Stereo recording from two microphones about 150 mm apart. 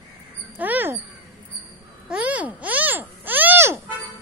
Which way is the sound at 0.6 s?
10° right (ahead or behind).